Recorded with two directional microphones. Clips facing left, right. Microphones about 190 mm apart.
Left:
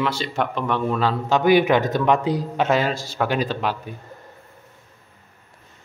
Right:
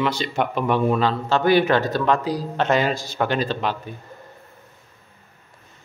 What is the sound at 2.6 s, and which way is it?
A man's voice, 5° left (ahead or behind).